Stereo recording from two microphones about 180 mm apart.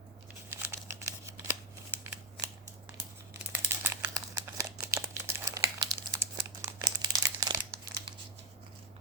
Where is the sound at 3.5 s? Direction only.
15° right (ahead or behind).